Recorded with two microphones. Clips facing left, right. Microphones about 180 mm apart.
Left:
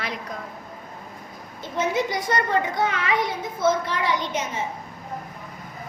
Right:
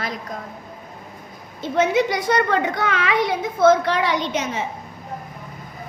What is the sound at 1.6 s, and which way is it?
A child's voice, 75° right (ahead or behind).